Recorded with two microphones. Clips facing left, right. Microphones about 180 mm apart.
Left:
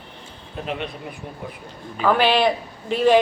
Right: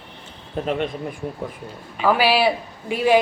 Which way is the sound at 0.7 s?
45° right (ahead or behind).